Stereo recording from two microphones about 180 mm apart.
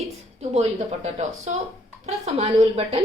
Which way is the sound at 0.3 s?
35° right (ahead or behind).